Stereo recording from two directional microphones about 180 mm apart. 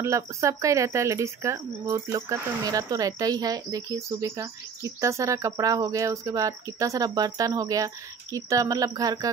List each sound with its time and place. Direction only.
0.0 s speech: 15° right (ahead or behind)